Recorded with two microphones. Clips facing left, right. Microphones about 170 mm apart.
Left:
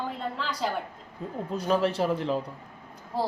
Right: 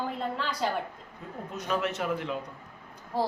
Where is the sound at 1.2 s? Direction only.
30° left (ahead or behind).